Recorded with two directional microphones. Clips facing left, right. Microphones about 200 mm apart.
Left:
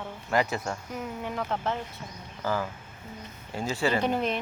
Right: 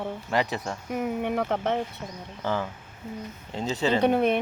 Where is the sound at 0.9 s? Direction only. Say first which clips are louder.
Right 7 dB; 60° right (ahead or behind).